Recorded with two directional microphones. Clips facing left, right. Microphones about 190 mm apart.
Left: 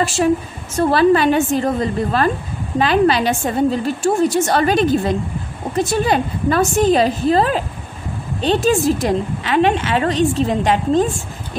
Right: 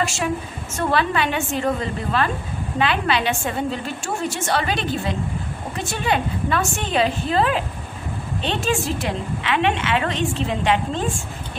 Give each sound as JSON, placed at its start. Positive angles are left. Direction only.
{"t": 0.0, "sound": "a woman's voice", "side_deg": 35}